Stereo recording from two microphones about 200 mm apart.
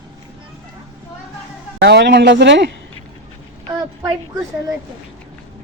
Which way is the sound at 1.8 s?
55° right (ahead or behind).